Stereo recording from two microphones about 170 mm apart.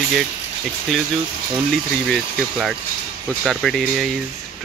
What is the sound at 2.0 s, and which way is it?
Speech, centre (ahead or behind).